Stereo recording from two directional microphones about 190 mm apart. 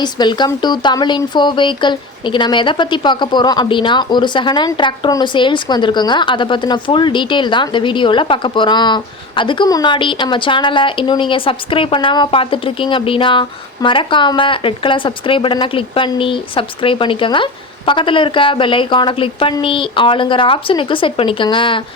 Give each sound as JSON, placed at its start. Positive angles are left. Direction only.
{"t": 0.0, "sound": "speech", "side_deg": 20}